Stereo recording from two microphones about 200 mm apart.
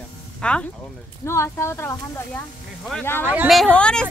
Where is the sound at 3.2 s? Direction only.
5° right (ahead or behind).